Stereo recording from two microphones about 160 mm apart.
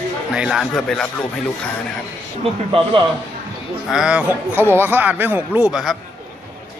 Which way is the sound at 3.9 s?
5° right (ahead or behind).